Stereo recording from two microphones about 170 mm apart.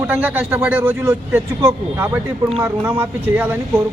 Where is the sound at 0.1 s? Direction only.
10° right (ahead or behind).